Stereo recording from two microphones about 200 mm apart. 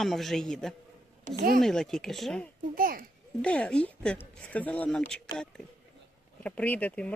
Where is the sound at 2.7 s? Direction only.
45° right (ahead or behind).